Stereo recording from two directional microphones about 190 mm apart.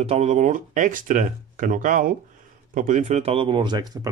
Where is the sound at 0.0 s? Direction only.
35° right (ahead or behind).